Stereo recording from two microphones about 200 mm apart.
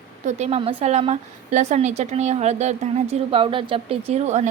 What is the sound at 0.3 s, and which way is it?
A woman's voice, 35° right (ahead or behind).